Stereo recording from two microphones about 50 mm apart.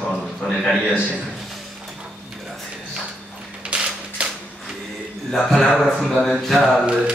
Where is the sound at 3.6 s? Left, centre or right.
Right.